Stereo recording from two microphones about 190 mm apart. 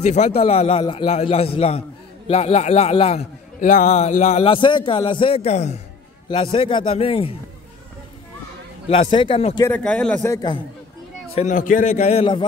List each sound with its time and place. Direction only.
0.0 s a man's voice: 35° left (ahead or behind)
8.8 s a man's voice: 30° left (ahead or behind)
9.7 s a man's voice: 5° left (ahead or behind)
11.3 s a man's voice: 40° left (ahead or behind)